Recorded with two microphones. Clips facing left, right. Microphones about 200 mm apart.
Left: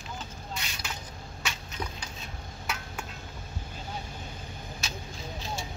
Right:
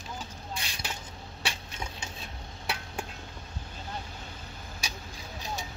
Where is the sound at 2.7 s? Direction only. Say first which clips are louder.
Right 1 dB; 30° right (ahead or behind).